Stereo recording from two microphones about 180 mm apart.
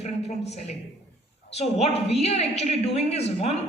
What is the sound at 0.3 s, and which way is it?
A woman's voice, 35° left (ahead or behind).